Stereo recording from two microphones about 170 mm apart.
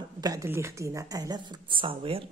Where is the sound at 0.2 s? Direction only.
25° right (ahead or behind).